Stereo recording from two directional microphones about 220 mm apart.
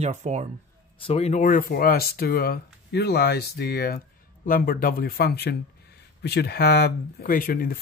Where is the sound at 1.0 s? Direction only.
25° left (ahead or behind).